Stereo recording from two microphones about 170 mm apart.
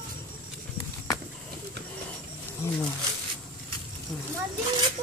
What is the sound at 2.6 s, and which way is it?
Speech, 15° left (ahead or behind).